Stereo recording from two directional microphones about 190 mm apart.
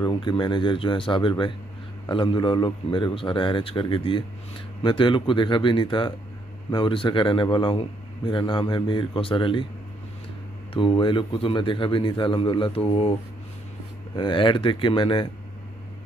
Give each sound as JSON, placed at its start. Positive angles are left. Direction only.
{"t": 0.0, "sound": "speech", "side_deg": 25}
{"t": 10.7, "sound": "speech", "side_deg": 25}
{"t": 14.1, "sound": "speech", "side_deg": 25}